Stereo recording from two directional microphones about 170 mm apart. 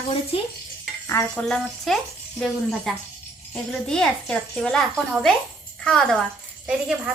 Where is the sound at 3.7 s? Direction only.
5° left (ahead or behind).